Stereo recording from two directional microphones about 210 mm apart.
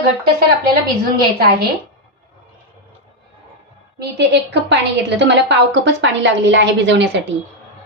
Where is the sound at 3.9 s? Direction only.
55° right (ahead or behind).